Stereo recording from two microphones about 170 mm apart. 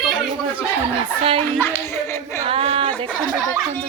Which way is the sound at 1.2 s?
35° right (ahead or behind).